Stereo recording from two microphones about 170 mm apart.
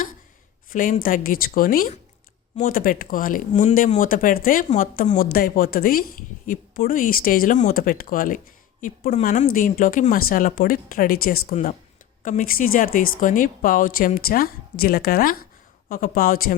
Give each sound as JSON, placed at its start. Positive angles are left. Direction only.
{"t": 0.7, "sound": "speech", "side_deg": 55}